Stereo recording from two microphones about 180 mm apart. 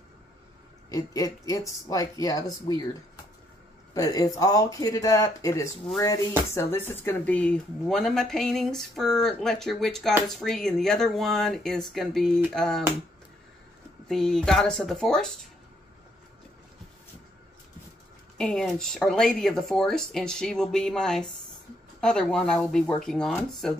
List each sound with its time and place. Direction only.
0.8 s speech: 20° left (ahead or behind)
3.9 s speech: 20° left (ahead or behind); by 12.8 s 5° left (ahead or behind)
14.0 s speech: centre (ahead or behind)
18.4 s speech: 5° left (ahead or behind)